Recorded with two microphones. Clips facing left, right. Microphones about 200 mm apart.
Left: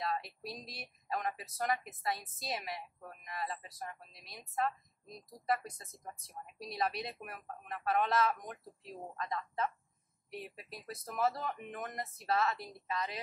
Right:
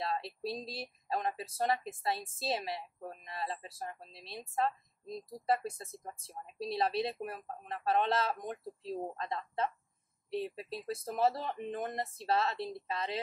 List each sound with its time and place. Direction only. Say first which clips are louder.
0.0 s speech: right 2 dB; 30° right (ahead or behind)